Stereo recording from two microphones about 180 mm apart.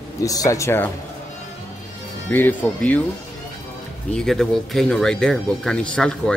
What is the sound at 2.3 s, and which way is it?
Speech, 10° left (ahead or behind).